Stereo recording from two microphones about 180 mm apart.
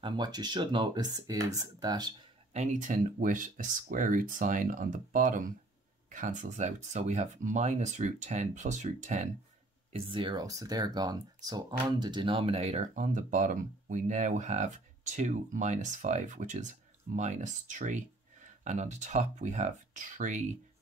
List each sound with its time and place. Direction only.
0.0 s speech: 25° right (ahead or behind)
2.5 s speech: 40° right (ahead or behind)
9.9 s speech: 25° right (ahead or behind); by 20.4 s 45° right (ahead or behind)